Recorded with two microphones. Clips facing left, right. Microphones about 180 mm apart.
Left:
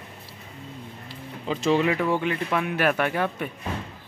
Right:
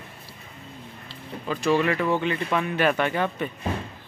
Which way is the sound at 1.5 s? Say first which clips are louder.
Even; 20° left (ahead or behind).